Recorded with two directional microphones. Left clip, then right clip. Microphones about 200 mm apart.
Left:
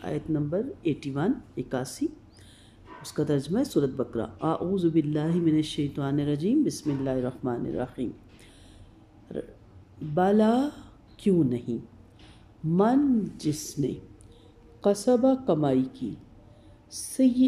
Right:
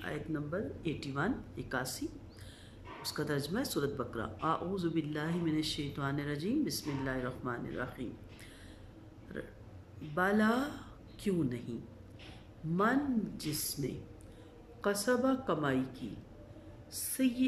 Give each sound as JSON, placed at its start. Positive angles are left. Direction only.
{"t": 0.0, "sound": "speech", "side_deg": 15}
{"t": 9.3, "sound": "speech", "side_deg": 15}
{"t": 12.7, "sound": "speech", "side_deg": 15}